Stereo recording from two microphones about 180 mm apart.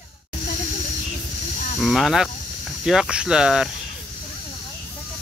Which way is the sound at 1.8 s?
Centre (ahead or behind).